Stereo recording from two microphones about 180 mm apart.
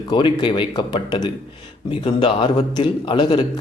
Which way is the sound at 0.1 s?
25° left (ahead or behind).